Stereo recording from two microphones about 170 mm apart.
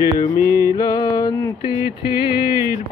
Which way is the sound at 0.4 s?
20° right (ahead or behind).